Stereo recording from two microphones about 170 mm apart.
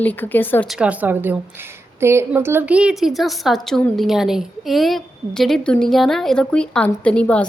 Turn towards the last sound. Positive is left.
turn(degrees=5)  # may be behind; listen again after turning